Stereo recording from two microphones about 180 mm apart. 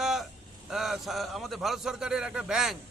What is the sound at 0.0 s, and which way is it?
A man's voice, centre (ahead or behind).